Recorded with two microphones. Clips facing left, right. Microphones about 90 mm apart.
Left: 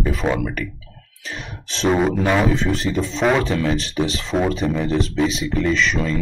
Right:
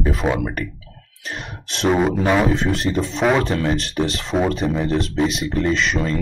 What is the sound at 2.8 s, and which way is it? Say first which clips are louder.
Speech: right 1 dB; 35° right (ahead or behind).